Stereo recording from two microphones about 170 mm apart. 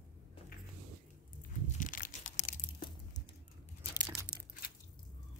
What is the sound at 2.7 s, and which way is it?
Crunch, 30° left (ahead or behind).